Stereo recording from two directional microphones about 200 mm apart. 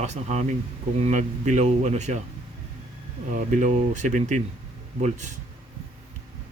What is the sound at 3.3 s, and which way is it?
Speech, 35° right (ahead or behind).